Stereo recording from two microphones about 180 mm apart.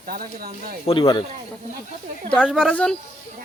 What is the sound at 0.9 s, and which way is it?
Speech, 30° left (ahead or behind).